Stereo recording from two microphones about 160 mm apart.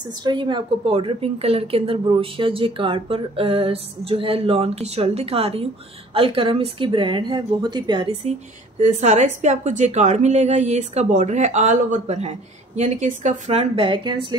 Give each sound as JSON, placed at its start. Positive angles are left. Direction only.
{"t": 0.2, "sound": "a woman's voice", "side_deg": -30}